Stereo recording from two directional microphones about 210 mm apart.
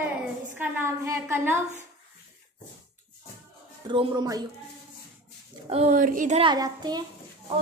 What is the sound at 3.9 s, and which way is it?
Speech, 20° right (ahead or behind).